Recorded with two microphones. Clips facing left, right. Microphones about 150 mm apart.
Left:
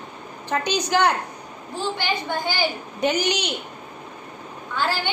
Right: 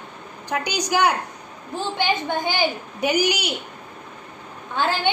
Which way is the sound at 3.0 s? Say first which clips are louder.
Right 1 dB; 10° right (ahead or behind).